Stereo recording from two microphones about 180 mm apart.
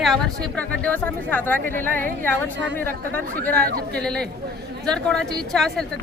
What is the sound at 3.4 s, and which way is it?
Speech, 10° left (ahead or behind).